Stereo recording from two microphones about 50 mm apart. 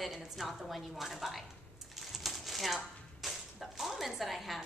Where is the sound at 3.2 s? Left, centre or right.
Centre.